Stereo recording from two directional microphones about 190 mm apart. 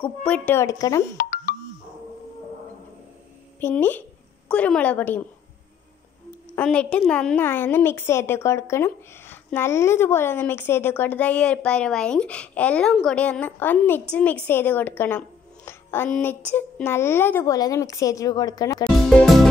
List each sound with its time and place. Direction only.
0.0 s a woman's voice: 5° left (ahead or behind)
1.1 s music: 50° left (ahead or behind)
3.6 s a woman's voice: 10° left (ahead or behind)
6.5 s a woman's voice: 5° left (ahead or behind)
19.0 s music: centre (ahead or behind)